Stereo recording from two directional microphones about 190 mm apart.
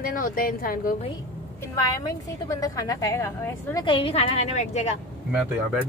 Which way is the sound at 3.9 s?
30° left (ahead or behind).